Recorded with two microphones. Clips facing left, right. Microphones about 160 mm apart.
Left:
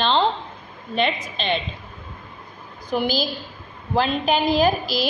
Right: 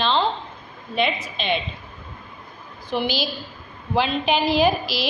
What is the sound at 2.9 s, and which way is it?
A woman's voice, 40° left (ahead or behind).